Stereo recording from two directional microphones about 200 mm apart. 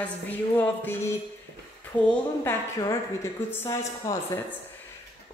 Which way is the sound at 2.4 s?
15° left (ahead or behind).